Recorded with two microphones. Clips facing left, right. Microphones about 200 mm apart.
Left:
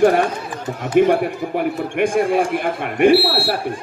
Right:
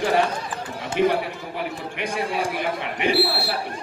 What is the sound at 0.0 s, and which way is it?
Speech, 50° left (ahead or behind).